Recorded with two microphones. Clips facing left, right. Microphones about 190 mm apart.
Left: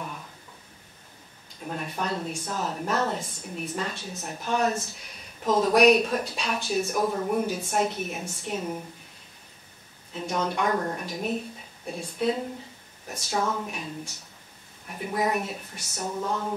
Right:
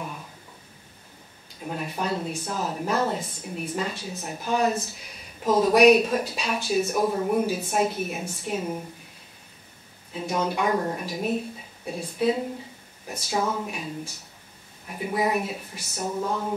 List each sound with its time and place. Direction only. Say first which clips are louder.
1.7 s speech: right 2 dB; 5° right (ahead or behind)
10.1 s speech: right 2 dB; 5° right (ahead or behind)
15.0 s speech: right 2 dB; 5° right (ahead or behind)